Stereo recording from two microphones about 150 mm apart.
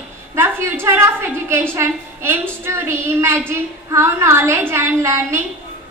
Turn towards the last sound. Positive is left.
turn(degrees=-20)  # may be behind; listen again after turning